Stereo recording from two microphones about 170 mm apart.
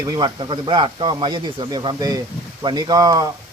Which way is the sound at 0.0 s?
25° right (ahead or behind).